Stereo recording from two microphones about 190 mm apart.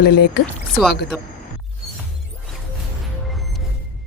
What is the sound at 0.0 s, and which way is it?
Speech, 55° left (ahead or behind).